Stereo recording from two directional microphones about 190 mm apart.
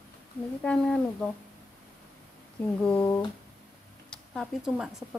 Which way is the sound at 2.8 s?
10° left (ahead or behind).